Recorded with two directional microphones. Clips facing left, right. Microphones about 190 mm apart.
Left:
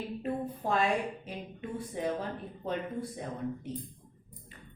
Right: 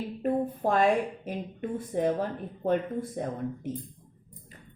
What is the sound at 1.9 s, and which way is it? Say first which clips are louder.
A woman's voice: right 7 dB; 45° right (ahead or behind).